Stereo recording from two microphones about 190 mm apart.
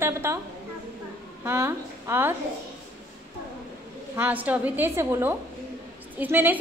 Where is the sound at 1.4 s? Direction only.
15° right (ahead or behind).